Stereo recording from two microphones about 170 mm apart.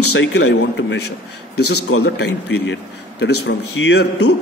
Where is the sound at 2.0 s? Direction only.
85° left.